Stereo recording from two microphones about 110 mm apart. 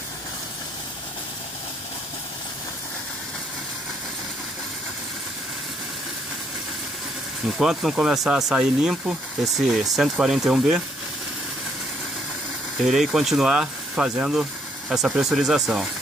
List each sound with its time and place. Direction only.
7.5 s speech: 5° right (ahead or behind)
12.8 s speech: 5° right (ahead or behind)